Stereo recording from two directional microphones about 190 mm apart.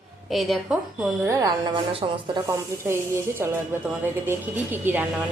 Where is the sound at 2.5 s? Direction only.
15° right (ahead or behind).